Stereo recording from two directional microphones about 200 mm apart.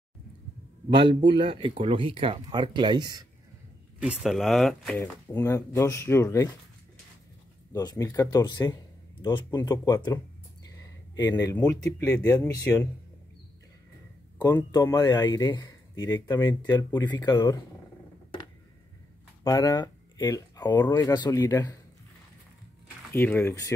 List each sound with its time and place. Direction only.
0.8 s speech: 20° right (ahead or behind)
4.0 s speech: centre (ahead or behind)
4.9 s speech: 10° left (ahead or behind)
7.7 s speech: 20° left (ahead or behind)
14.4 s speech: 15° left (ahead or behind)
19.4 s speech: 15° left (ahead or behind)
23.1 s speech: 10° left (ahead or behind)